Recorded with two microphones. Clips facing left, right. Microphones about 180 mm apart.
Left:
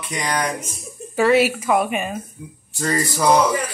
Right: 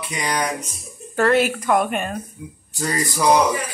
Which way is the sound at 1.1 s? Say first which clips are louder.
Left 2 dB; 5° left (ahead or behind).